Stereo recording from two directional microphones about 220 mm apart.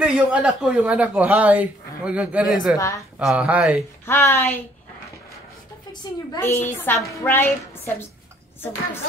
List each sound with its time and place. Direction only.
0.0 s speech: 5° right (ahead or behind)
4.0 s a woman's voice: 10° left (ahead or behind)
6.3 s a woman's voice: 10° left (ahead or behind)